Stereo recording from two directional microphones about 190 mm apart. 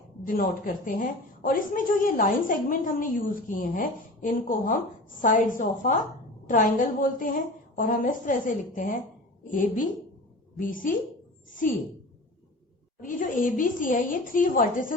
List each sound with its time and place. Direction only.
0.3 s a woman's voice: 45° left (ahead or behind)
13.0 s a woman's voice: 45° left (ahead or behind)